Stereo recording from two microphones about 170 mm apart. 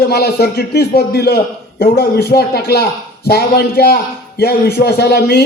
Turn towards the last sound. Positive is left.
turn(degrees=70)  # may be behind; listen again after turning